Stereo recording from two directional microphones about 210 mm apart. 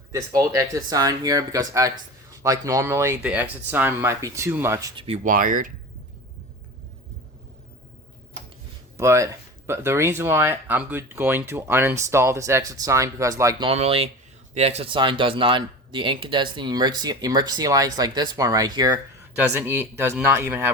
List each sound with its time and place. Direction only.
0.1 s speech: 15° right (ahead or behind)
4.9 s speech: 30° right (ahead or behind)
9.0 s speech: 15° right (ahead or behind)
13.7 s speech: 30° right (ahead or behind); by 20.7 s 10° right (ahead or behind)